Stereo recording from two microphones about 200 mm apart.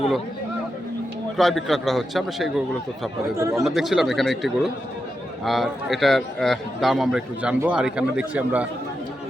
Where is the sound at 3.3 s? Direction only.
15° right (ahead or behind).